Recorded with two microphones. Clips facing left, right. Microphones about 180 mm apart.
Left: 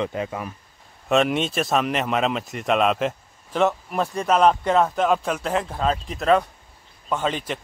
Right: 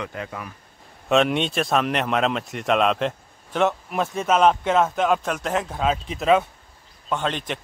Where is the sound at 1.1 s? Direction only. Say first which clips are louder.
Even; centre (ahead or behind).